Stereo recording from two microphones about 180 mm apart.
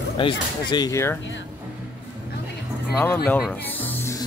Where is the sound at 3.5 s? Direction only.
10° left (ahead or behind).